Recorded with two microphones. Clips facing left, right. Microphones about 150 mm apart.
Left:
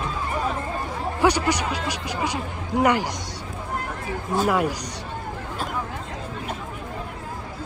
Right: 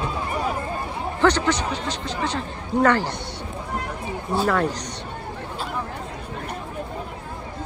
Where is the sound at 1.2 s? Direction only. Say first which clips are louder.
Right 1 dB; 10° left (ahead or behind).